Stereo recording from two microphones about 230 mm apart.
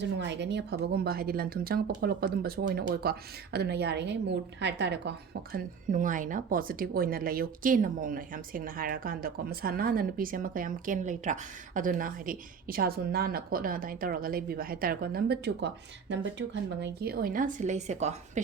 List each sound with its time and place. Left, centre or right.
0.2 s speech: right